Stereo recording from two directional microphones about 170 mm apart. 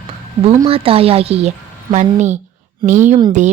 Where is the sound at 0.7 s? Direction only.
35° right (ahead or behind).